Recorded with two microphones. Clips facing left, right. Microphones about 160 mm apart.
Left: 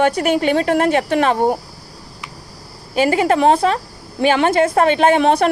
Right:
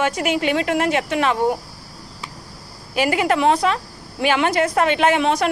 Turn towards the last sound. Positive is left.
turn(degrees=40)  # may be behind; listen again after turning